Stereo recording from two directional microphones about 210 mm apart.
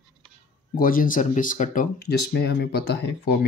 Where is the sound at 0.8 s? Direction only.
40° left (ahead or behind).